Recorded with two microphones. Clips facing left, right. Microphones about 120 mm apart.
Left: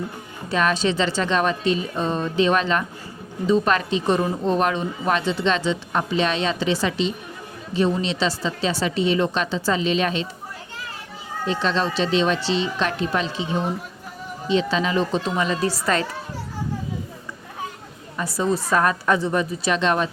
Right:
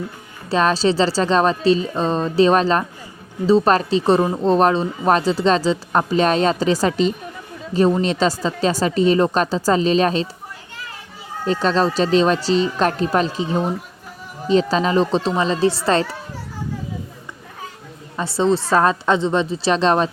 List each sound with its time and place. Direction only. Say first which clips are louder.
0.4 s speech: right 4 dB; 30° right (ahead or behind)
11.4 s speech: right 5 dB; 40° right (ahead or behind)
18.2 s a woman's voice: right 5 dB; 25° right (ahead or behind)